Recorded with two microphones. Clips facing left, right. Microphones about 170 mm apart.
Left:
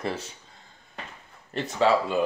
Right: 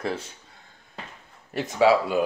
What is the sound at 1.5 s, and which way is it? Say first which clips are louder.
Speech: right 3 dB; 10° right (ahead or behind).